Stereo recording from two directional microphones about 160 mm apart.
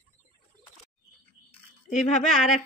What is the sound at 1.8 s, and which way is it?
Speech, 50° left (ahead or behind).